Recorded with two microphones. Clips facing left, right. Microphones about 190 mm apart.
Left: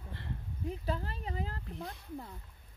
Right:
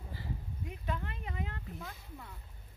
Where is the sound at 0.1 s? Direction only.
Centre (ahead or behind).